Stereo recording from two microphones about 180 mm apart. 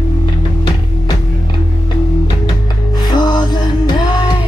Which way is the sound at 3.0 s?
25° left (ahead or behind).